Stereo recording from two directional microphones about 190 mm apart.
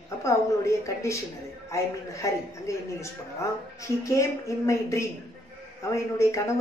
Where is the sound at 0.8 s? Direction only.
15° left (ahead or behind).